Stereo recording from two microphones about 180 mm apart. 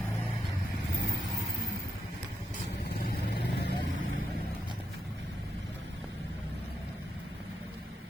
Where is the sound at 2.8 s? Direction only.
60° left (ahead or behind).